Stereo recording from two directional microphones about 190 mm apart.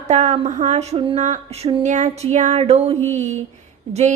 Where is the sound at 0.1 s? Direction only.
40° right (ahead or behind).